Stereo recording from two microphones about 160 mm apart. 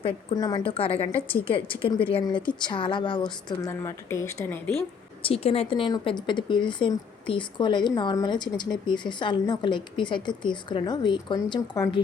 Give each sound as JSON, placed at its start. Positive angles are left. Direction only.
{"t": 0.3, "sound": "speech", "side_deg": 25}
{"t": 3.7, "sound": "speech", "side_deg": 15}
{"t": 5.2, "sound": "speech", "side_deg": 40}